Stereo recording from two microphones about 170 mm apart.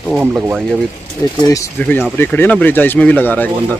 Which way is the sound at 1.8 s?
10° left (ahead or behind).